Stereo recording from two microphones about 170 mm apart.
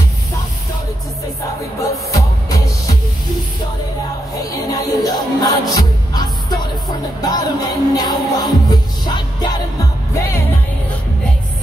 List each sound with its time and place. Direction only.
2.0 s music: 20° left (ahead or behind)
4.4 s music: 20° left (ahead or behind)